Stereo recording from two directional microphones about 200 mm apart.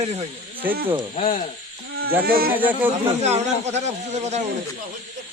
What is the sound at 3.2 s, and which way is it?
Speech, 35° right (ahead or behind).